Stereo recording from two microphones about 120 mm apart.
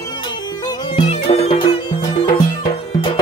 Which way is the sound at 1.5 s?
40° left (ahead or behind).